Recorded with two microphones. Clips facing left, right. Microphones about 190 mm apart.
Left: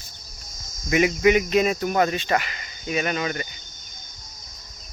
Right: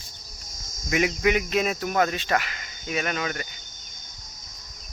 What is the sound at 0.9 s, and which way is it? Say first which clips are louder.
Speech: left 4 dB; centre (ahead or behind).